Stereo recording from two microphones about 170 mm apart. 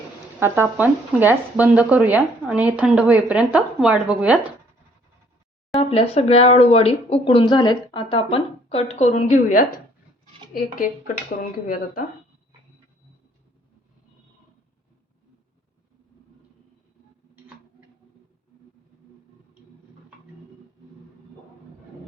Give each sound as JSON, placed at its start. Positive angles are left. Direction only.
{"t": 0.3, "sound": "speech", "side_deg": -15}
{"t": 5.9, "sound": "speech", "side_deg": 35}